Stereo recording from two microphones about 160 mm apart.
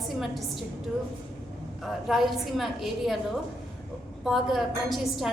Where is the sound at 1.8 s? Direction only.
Centre (ahead or behind).